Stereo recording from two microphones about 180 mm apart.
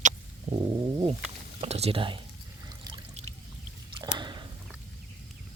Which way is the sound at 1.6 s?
35° right (ahead or behind).